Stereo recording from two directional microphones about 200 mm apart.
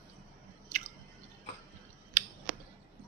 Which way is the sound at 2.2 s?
40° right (ahead or behind).